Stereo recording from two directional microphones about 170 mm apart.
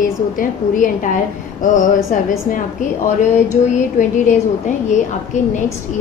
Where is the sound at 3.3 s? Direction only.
45° left (ahead or behind).